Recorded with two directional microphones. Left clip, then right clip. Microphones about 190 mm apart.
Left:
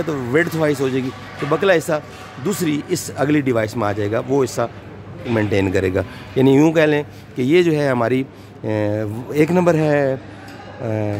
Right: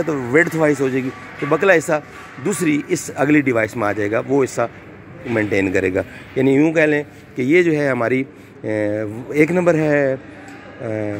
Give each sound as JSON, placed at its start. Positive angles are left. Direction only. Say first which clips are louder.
{"t": 0.0, "sound": "speech", "louder": "right 2 dB", "side_deg": 0}
{"t": 5.9, "sound": "a man's voice", "louder": "right 1 dB", "side_deg": 25}
{"t": 7.8, "sound": "speech", "louder": "even", "side_deg": 15}